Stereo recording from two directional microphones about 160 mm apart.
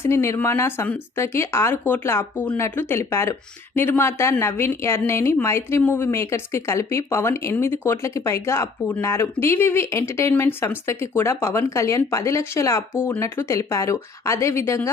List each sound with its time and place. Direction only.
0.0 s a woman's voice: 15° left (ahead or behind)